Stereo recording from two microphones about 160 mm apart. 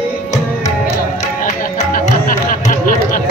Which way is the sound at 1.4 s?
55° left (ahead or behind).